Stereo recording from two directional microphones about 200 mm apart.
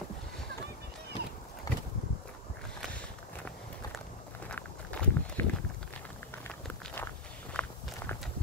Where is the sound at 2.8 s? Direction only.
5° left (ahead or behind).